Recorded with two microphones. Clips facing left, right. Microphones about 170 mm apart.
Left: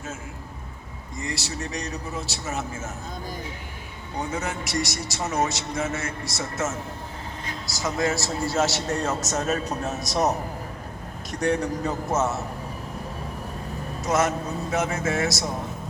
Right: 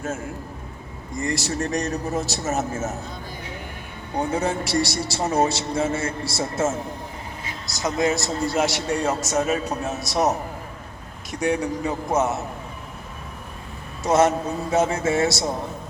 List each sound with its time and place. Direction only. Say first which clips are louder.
1.2 s speech: right 7 dB; 50° right (ahead or behind)
4.3 s a man's voice: right 7 dB; 30° right (ahead or behind)
7.8 s a man's voice: right 3 dB; 20° right (ahead or behind)
14.0 s a man's voice: right 5 dB; 25° right (ahead or behind)